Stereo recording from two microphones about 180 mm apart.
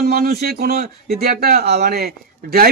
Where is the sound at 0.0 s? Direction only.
60° right (ahead or behind).